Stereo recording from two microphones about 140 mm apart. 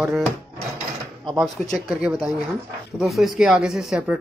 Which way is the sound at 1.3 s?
Centre (ahead or behind).